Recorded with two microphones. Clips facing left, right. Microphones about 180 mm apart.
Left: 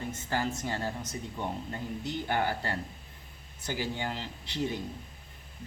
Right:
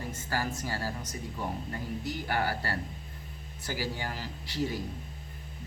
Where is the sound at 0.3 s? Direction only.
20° left (ahead or behind).